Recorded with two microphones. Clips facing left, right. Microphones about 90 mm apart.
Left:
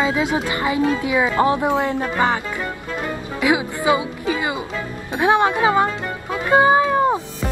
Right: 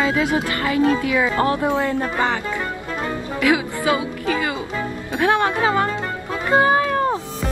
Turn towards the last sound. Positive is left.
turn(degrees=15)  # may be behind; listen again after turning